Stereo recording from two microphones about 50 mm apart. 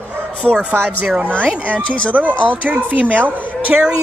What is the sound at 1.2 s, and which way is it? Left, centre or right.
A woman's voice, right.